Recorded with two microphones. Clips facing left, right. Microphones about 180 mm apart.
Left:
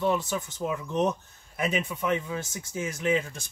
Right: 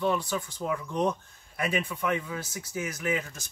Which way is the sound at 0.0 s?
20° left (ahead or behind).